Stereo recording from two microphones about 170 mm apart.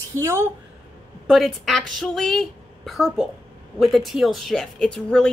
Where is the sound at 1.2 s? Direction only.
Centre (ahead or behind).